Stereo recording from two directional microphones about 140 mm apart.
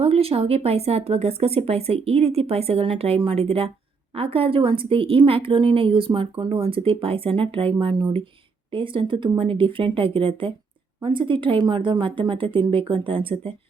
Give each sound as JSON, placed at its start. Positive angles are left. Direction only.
{"t": 0.0, "sound": "a woman's voice", "side_deg": -45}